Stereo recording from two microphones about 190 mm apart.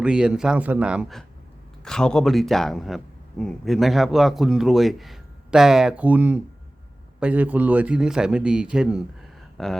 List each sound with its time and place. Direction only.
0.0 s speech: 5° right (ahead or behind)